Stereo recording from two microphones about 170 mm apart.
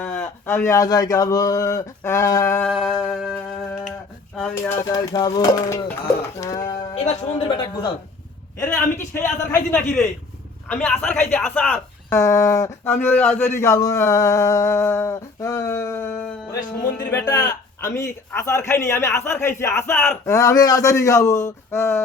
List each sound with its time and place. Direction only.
0.0 s speech: 10° left (ahead or behind)
2.6 s music: centre (ahead or behind)
4.5 s a man's voice: 15° left (ahead or behind)
6.9 s speech: 40° left (ahead or behind)
7.4 s speech: 30° left (ahead or behind)
8.5 s a man's voice: 15° left (ahead or behind)
10.7 s a man's voice: 5° left (ahead or behind)
16.5 s a man's voice: 25° left (ahead or behind)